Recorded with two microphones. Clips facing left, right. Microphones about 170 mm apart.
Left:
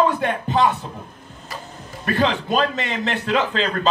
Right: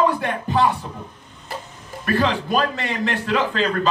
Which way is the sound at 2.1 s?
20° left (ahead or behind).